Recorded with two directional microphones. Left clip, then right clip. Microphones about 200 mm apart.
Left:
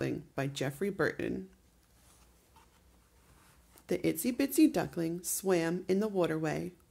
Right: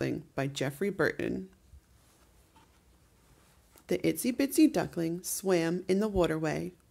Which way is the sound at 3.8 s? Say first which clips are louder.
Right 2 dB; 15° right (ahead or behind).